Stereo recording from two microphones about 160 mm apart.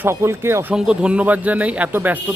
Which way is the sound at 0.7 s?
5° right (ahead or behind).